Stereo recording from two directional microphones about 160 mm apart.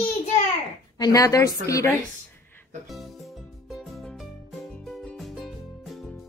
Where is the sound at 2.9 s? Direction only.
Centre (ahead or behind).